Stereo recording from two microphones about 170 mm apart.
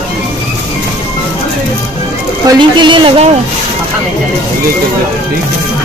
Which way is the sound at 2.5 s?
25° right (ahead or behind).